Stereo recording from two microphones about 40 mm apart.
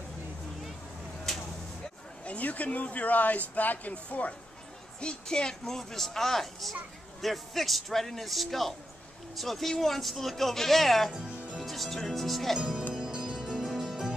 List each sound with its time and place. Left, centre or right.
2.2 s speech: left
3.9 s speech: left
5.0 s speech: centre
11.1 s music: right
11.6 s speech: centre
12.9 s music: right